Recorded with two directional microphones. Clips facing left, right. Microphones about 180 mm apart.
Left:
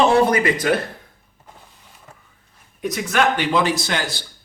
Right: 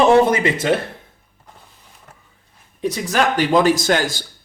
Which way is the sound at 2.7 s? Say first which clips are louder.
Right 1 dB; 30° right (ahead or behind).